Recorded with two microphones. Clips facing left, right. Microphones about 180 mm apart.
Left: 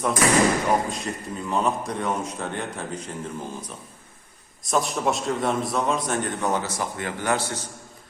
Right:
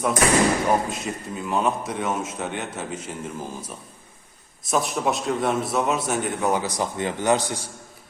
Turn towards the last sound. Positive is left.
turn(degrees=-15)  # may be behind; listen again after turning